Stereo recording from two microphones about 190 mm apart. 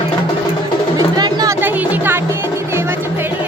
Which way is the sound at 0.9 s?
20° right (ahead or behind).